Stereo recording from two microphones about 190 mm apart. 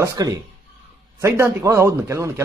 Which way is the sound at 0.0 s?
20° right (ahead or behind).